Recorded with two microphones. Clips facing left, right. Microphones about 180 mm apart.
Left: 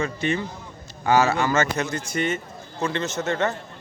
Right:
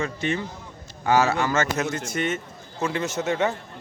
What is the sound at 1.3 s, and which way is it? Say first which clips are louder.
Speech: left 1 dB; 10° left (ahead or behind).